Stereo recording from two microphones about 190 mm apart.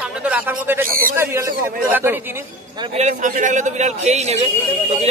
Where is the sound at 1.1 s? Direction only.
15° right (ahead or behind).